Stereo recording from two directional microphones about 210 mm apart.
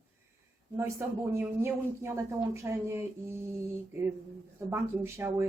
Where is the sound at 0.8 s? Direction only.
15° right (ahead or behind).